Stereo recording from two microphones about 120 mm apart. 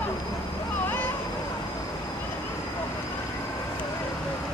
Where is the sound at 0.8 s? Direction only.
15° left (ahead or behind).